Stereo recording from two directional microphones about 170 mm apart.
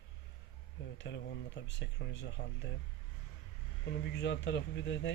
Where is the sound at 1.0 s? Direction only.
90° left.